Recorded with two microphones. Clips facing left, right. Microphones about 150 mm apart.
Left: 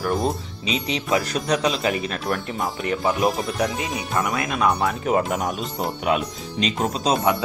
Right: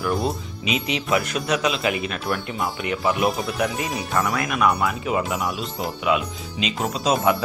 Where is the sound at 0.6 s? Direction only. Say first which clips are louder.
Right 1 dB; 35° left (ahead or behind).